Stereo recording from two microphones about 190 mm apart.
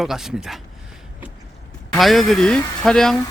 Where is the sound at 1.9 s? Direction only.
Centre (ahead or behind).